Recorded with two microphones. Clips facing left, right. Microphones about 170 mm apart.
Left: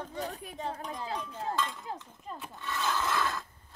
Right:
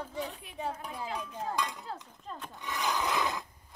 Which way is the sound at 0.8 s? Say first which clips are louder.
Left 1 dB; 10° right (ahead or behind).